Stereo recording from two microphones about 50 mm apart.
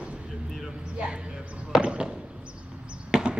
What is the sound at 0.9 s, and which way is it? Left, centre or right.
Speech, right.